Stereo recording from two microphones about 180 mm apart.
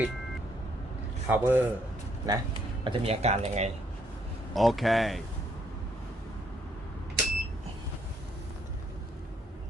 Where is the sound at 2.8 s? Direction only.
30° right (ahead or behind).